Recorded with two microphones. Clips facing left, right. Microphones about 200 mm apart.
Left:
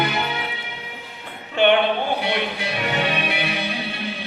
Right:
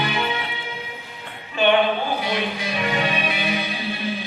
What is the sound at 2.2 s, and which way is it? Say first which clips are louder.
Music: left 1 dB; 65° left (ahead or behind).